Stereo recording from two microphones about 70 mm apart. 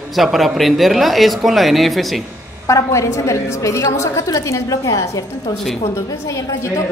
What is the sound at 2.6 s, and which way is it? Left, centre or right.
A woman's voice, left.